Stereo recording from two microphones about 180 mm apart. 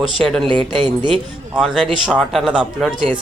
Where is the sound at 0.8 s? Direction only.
30° right (ahead or behind).